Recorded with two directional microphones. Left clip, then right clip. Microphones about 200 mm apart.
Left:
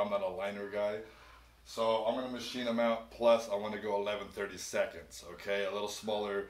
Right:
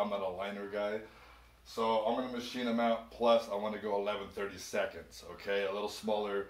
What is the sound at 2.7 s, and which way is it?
Speech, 15° left (ahead or behind).